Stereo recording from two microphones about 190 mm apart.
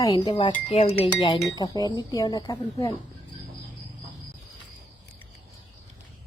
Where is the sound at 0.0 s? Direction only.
25° left (ahead or behind).